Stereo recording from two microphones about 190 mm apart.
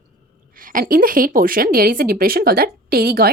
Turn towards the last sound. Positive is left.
turn(degrees=-55)  # may be behind; listen again after turning